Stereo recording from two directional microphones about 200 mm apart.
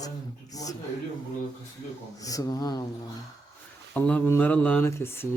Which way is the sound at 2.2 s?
20° left (ahead or behind).